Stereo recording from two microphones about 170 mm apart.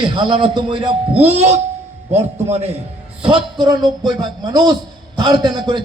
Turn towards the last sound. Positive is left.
turn(degrees=-25)  # may be behind; listen again after turning